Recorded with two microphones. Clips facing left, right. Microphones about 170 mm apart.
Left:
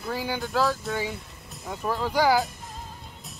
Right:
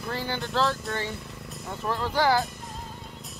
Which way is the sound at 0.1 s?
10° left (ahead or behind).